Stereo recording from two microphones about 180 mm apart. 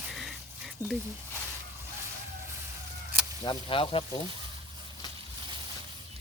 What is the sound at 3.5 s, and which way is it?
Speech, 30° left (ahead or behind).